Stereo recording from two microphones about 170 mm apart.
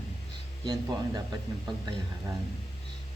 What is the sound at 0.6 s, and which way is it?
Speech, 25° right (ahead or behind).